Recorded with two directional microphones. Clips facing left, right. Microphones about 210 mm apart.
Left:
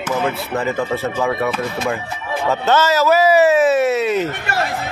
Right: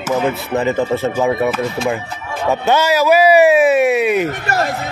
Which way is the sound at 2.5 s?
15° right (ahead or behind).